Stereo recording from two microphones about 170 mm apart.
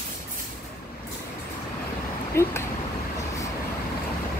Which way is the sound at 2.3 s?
15° left (ahead or behind).